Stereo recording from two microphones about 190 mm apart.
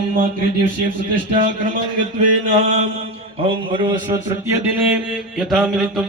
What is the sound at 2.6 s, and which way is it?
Mantra, 40° right (ahead or behind).